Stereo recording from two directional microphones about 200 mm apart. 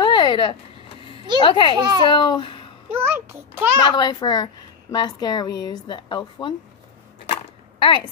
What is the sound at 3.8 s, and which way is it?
Speech, 20° left (ahead or behind).